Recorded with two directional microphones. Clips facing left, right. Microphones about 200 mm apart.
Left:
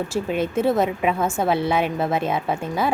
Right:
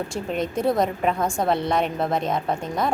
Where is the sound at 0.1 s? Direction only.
5° left (ahead or behind).